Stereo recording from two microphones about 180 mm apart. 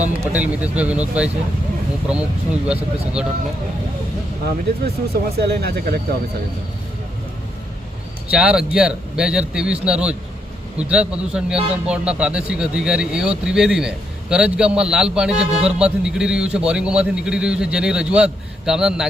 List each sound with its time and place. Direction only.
0.3 s a man's voice: 5° right (ahead or behind)
5.1 s speech: 65° right (ahead or behind)
8.3 s a man's voice: 5° right (ahead or behind)